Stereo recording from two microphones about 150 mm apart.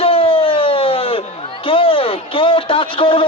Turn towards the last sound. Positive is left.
turn(degrees=35)  # may be behind; listen again after turning